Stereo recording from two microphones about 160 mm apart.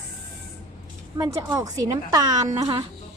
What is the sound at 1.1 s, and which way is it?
Speech, 20° right (ahead or behind).